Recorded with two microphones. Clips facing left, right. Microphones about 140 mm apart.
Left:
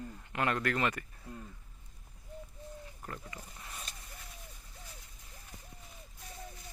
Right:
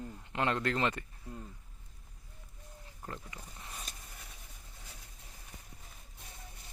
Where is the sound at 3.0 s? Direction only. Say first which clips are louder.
Right 3 dB; 20° right (ahead or behind).